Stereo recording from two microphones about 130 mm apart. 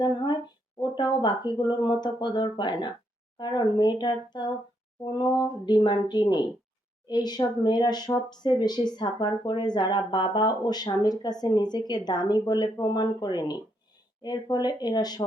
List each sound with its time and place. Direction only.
0.8 s speech: 35° left (ahead or behind)